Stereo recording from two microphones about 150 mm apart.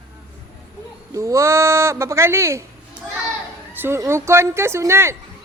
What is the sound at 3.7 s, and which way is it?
A woman's voice, 15° right (ahead or behind).